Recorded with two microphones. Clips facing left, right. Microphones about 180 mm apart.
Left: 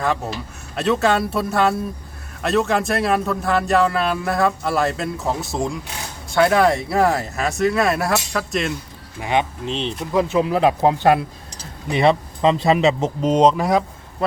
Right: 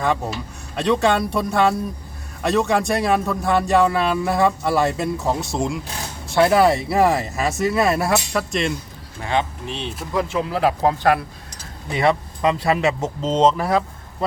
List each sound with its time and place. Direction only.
0.8 s a man's voice: 5° left (ahead or behind)
9.2 s speech: 15° left (ahead or behind)
9.8 s a man's voice: 5° right (ahead or behind)
10.1 s speech: 20° left (ahead or behind)